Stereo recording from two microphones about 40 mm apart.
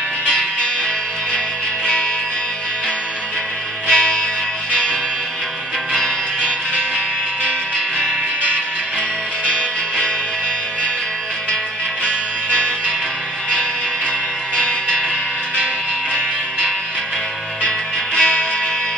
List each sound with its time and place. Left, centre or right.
3.8 s music: left
5.9 s music: left
9.5 s music: centre
12.0 s music: left
14.5 s music: left
17.6 s music: left